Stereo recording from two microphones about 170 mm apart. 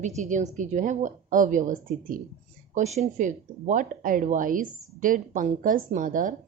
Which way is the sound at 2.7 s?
40° right (ahead or behind).